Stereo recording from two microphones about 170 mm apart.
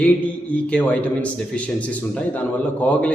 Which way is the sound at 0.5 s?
10° left (ahead or behind).